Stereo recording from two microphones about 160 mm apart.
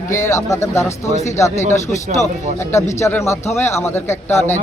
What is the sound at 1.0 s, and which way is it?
Speech, 45° left (ahead or behind).